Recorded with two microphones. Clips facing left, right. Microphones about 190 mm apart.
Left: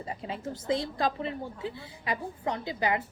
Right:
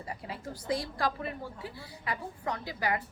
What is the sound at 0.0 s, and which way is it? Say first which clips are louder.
A woman's voice: left 4 dB; 20° left (ahead or behind).